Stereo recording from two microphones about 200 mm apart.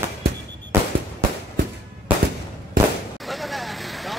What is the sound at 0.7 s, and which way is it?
Fireworks, 10° right (ahead or behind).